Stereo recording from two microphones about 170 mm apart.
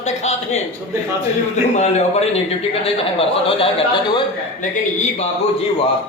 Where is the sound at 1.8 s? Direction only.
40° left (ahead or behind).